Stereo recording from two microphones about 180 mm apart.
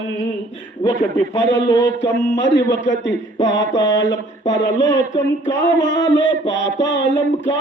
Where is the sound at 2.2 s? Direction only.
75° left (ahead or behind).